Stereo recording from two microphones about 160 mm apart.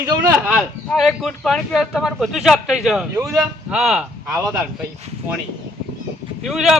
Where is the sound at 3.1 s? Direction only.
20° right (ahead or behind).